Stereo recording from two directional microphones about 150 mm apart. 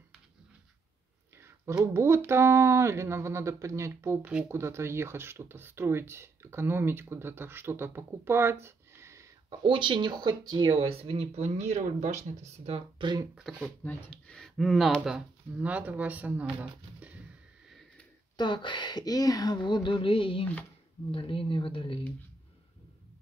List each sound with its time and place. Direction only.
2.0 s speech: 15° right (ahead or behind)
9.5 s speech: 35° right (ahead or behind)
13.3 s speech: centre (ahead or behind)
13.8 s speech: 10° left (ahead or behind); by 17.1 s 10° right (ahead or behind)
18.3 s speech: 30° left (ahead or behind)